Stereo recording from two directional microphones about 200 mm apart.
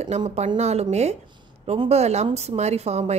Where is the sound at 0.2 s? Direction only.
25° right (ahead or behind).